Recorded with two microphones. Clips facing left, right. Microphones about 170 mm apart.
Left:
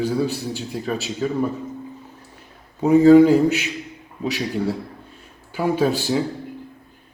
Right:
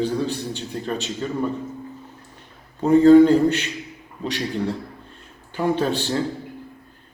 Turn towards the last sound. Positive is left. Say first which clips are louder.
# left 2 dB
turn(degrees=10)  # may be behind; listen again after turning